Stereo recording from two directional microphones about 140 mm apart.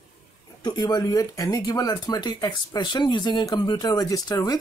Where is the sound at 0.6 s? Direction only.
30° left (ahead or behind).